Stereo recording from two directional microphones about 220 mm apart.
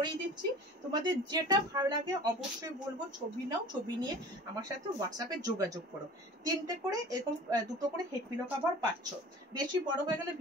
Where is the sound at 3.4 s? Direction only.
15° right (ahead or behind).